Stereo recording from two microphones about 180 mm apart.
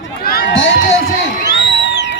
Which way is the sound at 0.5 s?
90° left.